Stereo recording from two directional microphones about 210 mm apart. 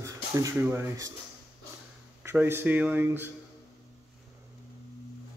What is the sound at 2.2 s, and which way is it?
Speech, 10° right (ahead or behind).